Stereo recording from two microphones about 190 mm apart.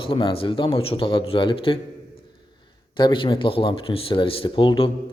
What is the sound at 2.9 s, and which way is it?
A man's voice, 25° left (ahead or behind).